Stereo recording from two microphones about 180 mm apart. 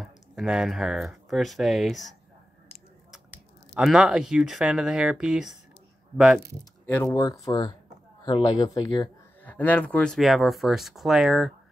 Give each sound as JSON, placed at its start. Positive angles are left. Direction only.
{"t": 0.0, "sound": "speech", "side_deg": 0}
{"t": 3.7, "sound": "speech", "side_deg": -5}
{"t": 6.9, "sound": "speech", "side_deg": 10}
{"t": 7.2, "sound": "speech", "side_deg": 20}
{"t": 9.4, "sound": "speech", "side_deg": 10}